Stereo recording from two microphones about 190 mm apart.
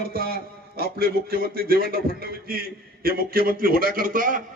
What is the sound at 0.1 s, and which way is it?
A man's voice, 50° right (ahead or behind).